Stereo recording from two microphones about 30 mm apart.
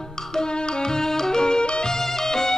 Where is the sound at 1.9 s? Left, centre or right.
Centre.